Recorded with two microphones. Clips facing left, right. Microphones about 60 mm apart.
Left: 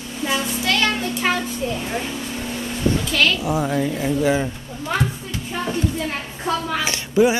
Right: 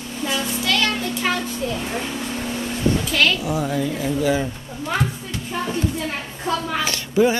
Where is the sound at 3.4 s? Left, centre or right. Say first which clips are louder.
Left 2 dB; left.